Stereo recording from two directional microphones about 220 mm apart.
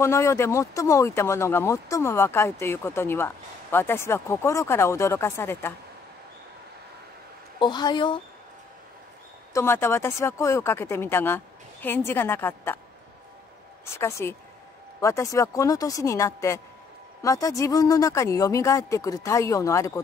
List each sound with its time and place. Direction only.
0.0 s speech: 15° left (ahead or behind)
7.5 s a woman's voice: 20° left (ahead or behind)
9.5 s speech: 10° left (ahead or behind)
13.9 s speech: 10° left (ahead or behind)